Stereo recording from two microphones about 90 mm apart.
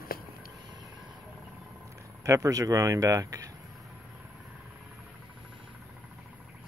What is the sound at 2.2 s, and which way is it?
Speech, 35° right (ahead or behind).